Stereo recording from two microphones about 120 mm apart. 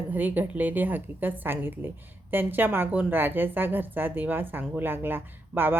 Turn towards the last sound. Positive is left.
turn(degrees=-15)  # may be behind; listen again after turning